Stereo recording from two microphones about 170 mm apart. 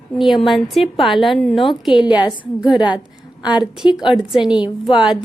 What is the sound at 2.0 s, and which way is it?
Speech, 25° left (ahead or behind).